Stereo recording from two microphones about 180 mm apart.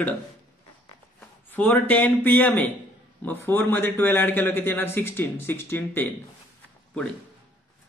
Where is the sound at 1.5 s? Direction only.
10° left (ahead or behind).